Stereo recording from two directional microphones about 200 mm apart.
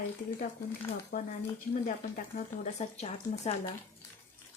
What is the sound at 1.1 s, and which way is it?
Speech, 45° left (ahead or behind).